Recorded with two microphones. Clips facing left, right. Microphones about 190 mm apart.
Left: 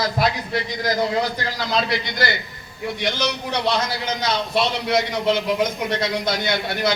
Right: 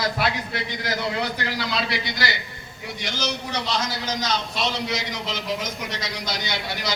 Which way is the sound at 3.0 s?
60° left (ahead or behind).